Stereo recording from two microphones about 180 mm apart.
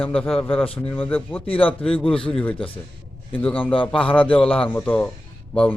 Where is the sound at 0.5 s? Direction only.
30° left (ahead or behind).